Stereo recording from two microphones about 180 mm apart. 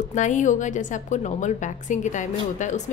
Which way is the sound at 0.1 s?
45° left (ahead or behind).